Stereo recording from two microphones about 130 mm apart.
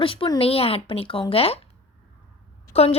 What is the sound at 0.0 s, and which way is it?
Speech, 45° left (ahead or behind).